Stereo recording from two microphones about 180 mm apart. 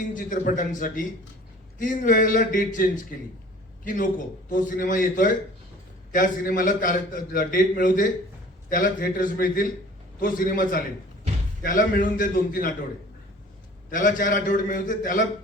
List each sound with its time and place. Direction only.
0.1 s a man's voice: 45° left (ahead or behind)
13.9 s a man's voice: 50° left (ahead or behind)